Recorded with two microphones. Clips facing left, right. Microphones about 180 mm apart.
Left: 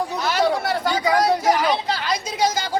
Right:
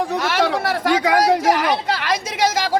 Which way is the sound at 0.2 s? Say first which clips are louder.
Left 2 dB; 90° right.